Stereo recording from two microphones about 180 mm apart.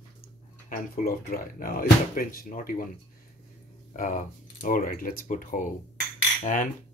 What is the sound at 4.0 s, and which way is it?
Speech, 45° left (ahead or behind).